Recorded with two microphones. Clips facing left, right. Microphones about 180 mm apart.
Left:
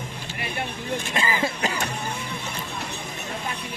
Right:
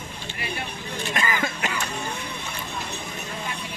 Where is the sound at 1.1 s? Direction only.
30° left (ahead or behind).